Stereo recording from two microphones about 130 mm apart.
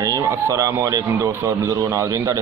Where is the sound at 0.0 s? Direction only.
25° right (ahead or behind).